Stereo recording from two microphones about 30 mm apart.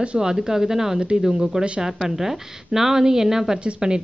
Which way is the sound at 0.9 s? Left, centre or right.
Right.